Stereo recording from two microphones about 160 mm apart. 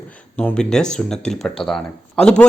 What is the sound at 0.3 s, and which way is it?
A man's voice, 5° left (ahead or behind).